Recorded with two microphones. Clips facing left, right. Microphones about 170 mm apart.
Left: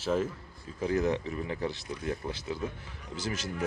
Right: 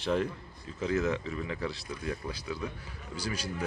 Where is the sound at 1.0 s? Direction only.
20° left (ahead or behind).